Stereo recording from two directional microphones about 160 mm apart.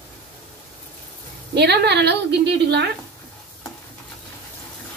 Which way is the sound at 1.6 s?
90° right.